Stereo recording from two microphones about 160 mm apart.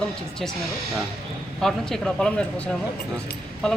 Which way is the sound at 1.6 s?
5° left (ahead or behind).